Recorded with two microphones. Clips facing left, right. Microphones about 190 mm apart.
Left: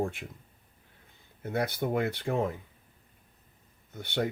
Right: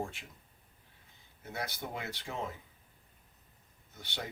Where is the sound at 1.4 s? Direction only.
55° left (ahead or behind).